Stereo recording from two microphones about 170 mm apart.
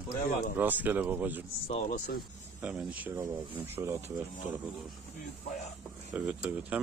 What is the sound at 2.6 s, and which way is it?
Speech, 10° right (ahead or behind).